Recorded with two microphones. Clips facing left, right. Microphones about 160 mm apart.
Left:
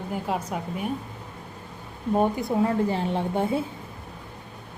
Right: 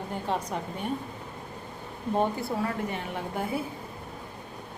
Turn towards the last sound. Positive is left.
turn(degrees=25)  # may be behind; listen again after turning